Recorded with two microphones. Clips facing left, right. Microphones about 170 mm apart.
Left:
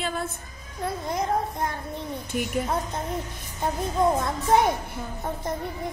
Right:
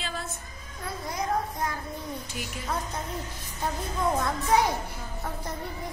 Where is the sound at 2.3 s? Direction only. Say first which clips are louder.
Left 10 dB; 55° left (ahead or behind).